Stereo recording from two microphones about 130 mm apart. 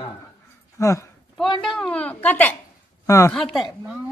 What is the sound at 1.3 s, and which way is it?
A woman's voice, centre (ahead or behind).